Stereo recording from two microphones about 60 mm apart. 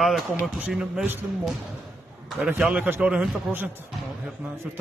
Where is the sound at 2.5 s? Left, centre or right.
Centre.